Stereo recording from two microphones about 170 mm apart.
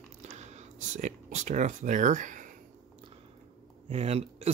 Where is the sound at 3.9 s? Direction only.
40° right (ahead or behind).